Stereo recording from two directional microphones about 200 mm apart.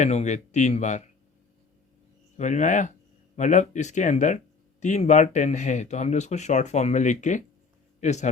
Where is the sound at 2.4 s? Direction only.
40° left (ahead or behind).